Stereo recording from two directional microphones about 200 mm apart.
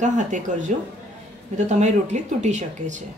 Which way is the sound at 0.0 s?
40° right (ahead or behind).